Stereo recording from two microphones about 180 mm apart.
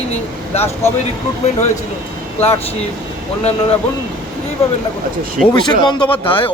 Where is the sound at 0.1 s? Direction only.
35° left (ahead or behind).